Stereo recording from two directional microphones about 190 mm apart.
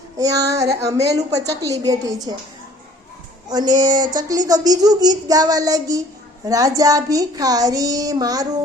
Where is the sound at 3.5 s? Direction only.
20° right (ahead or behind).